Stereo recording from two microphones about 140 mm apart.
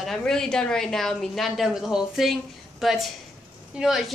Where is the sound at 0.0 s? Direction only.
5° left (ahead or behind).